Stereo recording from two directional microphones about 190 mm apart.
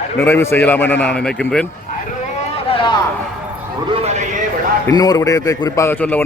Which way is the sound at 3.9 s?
35° right (ahead or behind).